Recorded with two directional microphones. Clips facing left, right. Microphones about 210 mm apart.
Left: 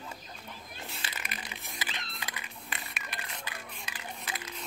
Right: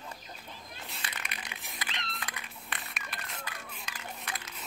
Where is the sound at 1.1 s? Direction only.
Centre (ahead or behind).